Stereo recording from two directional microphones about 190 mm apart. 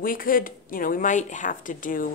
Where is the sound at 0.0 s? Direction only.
50° left (ahead or behind).